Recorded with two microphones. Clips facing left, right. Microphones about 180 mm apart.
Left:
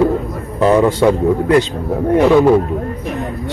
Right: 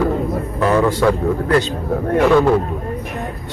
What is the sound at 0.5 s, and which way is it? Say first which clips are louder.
Speech: left 4 dB; 25° left (ahead or behind).